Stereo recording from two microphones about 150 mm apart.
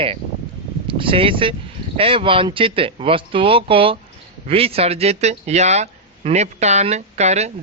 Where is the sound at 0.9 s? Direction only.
35° right (ahead or behind).